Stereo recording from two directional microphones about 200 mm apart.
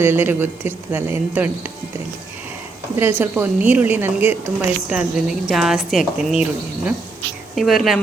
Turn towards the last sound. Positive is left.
turn(degrees=0)  # may be behind; listen again after turning